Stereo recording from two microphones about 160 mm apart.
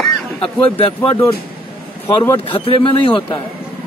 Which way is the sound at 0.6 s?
35° left (ahead or behind).